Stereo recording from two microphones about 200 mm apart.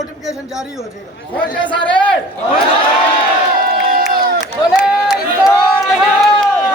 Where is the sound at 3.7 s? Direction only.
50° right (ahead or behind).